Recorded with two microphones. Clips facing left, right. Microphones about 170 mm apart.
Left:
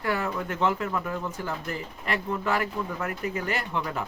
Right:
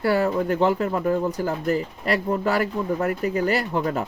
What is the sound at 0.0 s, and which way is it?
Speech, 35° right (ahead or behind).